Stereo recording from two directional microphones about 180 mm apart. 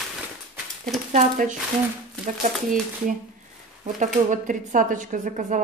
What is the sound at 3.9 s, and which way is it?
A woman's voice, 45° right (ahead or behind).